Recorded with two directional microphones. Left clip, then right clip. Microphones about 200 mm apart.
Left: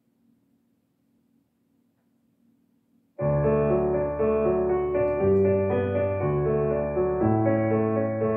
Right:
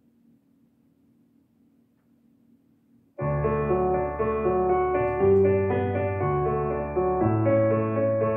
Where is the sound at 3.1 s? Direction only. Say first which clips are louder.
Left 3 dB; 45° right (ahead or behind).